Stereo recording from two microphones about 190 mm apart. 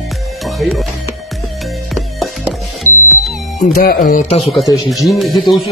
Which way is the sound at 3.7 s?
50° left (ahead or behind).